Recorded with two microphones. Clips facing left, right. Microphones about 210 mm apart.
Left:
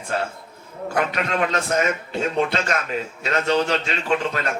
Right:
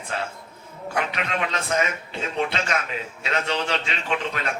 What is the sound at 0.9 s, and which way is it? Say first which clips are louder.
Speech: left 4 dB; 45° left (ahead or behind).